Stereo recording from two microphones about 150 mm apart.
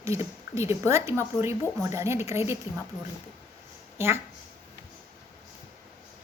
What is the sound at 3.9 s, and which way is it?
Speech, 15° right (ahead or behind).